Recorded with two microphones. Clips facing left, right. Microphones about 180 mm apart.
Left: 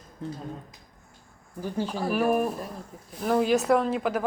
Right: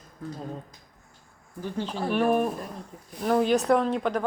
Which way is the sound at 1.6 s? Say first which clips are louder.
Left 1 dB; 10° left (ahead or behind).